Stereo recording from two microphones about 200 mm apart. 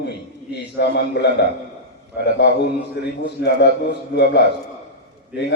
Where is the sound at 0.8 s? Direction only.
55° left (ahead or behind).